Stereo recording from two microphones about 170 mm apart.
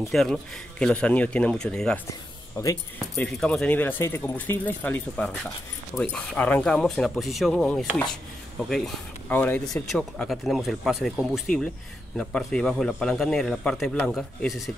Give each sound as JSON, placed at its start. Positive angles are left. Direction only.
{"t": 0.1, "sound": "speech", "side_deg": 5}
{"t": 2.5, "sound": "speech", "side_deg": 20}
{"t": 3.3, "sound": "speech", "side_deg": 5}